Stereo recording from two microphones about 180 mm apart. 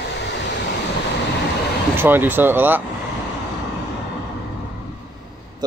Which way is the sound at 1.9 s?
10° right (ahead or behind).